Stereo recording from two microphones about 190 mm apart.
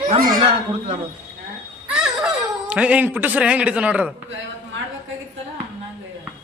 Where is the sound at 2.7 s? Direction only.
5° right (ahead or behind).